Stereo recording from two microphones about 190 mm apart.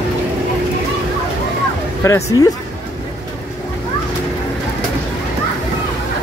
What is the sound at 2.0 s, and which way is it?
Speech, 15° left (ahead or behind).